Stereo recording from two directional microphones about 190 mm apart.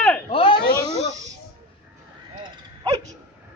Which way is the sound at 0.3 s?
30° left (ahead or behind).